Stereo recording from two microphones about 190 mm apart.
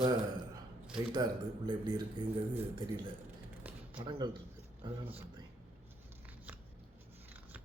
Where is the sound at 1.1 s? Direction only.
20° right (ahead or behind).